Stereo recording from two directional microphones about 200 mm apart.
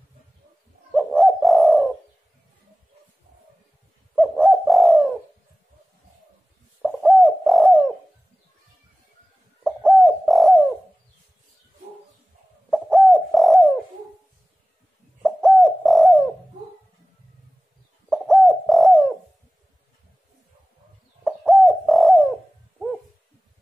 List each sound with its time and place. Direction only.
0.9 s bird: centre (ahead or behind)
4.1 s bird: centre (ahead or behind)
6.8 s bird: centre (ahead or behind)
9.6 s bird: 5° right (ahead or behind)
12.6 s bird: centre (ahead or behind)
15.2 s bird: centre (ahead or behind)
18.1 s bird: centre (ahead or behind)
21.2 s bird: centre (ahead or behind)